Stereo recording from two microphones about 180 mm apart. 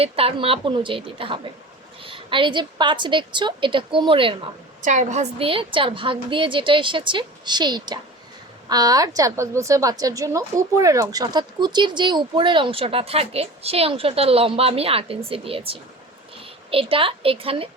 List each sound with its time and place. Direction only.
0.0 s a woman's voice: 30° right (ahead or behind)
4.8 s a woman's voice: 40° right (ahead or behind)